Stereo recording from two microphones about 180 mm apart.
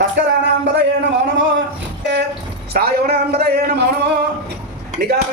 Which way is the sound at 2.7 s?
60° right (ahead or behind).